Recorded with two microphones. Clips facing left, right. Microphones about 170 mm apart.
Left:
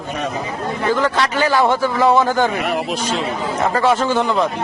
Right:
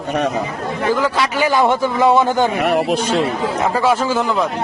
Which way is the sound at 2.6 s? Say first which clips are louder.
Right 5 dB; 60° right (ahead or behind).